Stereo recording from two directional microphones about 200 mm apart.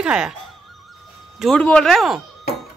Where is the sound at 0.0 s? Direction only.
5° right (ahead or behind).